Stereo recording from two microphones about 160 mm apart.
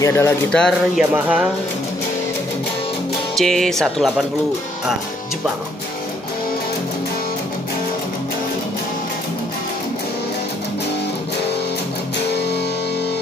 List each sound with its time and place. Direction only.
0.0 s speech: 15° left (ahead or behind)
0.5 s music: 5° left (ahead or behind)
1.1 s speech: 10° right (ahead or behind)
3.3 s music: 5° left (ahead or behind)